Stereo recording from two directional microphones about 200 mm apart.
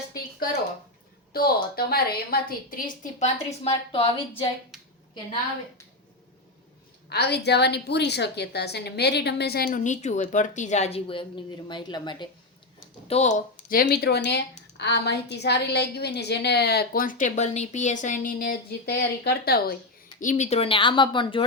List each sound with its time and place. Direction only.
1.3 s a woman's voice: 50° left (ahead or behind); by 4.5 s 25° left (ahead or behind)
4.7 s a sound: centre (ahead or behind)
7.1 s a woman's voice: 55° left (ahead or behind); by 12.3 s 20° left (ahead or behind)
13.1 s speech: 35° left (ahead or behind)
20.2 s speech: 35° left (ahead or behind)